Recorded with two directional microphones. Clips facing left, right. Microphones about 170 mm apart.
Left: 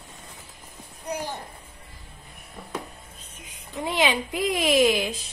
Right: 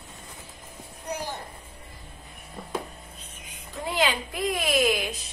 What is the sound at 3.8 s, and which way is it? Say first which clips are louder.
Speech: left 2 dB; 20° left (ahead or behind).